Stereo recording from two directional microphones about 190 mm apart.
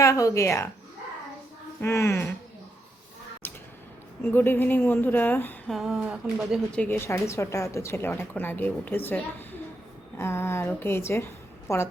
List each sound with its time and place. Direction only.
0.0 s speech: 15° left (ahead or behind)
1.8 s speech: 15° left (ahead or behind)
4.2 s speech: 10° left (ahead or behind)